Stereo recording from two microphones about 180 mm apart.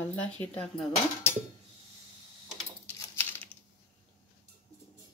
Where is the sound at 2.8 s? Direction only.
10° left (ahead or behind).